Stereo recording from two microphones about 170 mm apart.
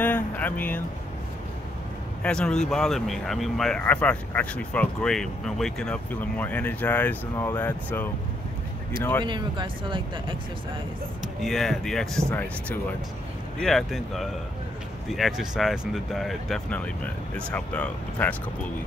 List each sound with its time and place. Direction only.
0.0 s a sound: 10° left (ahead or behind)
2.2 s speech: 5° left (ahead or behind)
9.2 s speech: 25° right (ahead or behind)
11.4 s speech: centre (ahead or behind)